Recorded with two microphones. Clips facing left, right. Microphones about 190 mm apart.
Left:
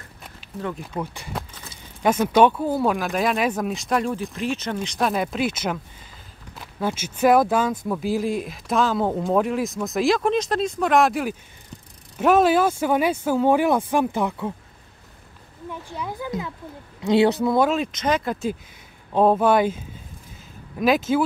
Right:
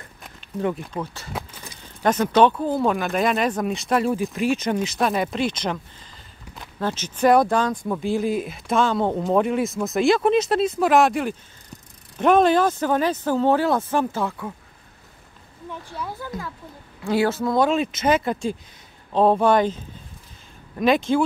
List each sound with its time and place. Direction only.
0.9 s speech: 10° right (ahead or behind)
1.3 s vehicle: 10° right (ahead or behind)
2.0 s speech: 10° left (ahead or behind)
15.9 s speech: 15° left (ahead or behind)